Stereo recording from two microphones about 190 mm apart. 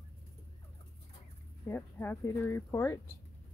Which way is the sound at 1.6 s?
10° left (ahead or behind).